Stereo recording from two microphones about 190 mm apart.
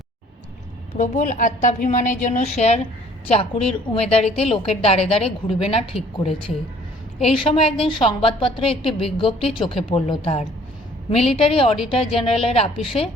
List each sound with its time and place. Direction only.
0.9 s a woman's voice: 40° left (ahead or behind)
3.6 s a woman's voice: centre (ahead or behind)
4.1 s a woman's voice: 30° left (ahead or behind)